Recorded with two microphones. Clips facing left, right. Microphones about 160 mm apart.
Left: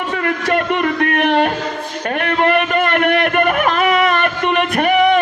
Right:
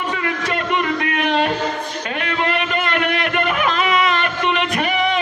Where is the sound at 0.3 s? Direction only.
55° left (ahead or behind).